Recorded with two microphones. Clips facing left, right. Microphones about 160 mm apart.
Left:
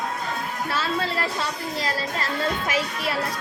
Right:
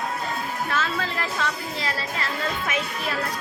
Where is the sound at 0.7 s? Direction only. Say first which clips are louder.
Left 3 dB; 35° left (ahead or behind).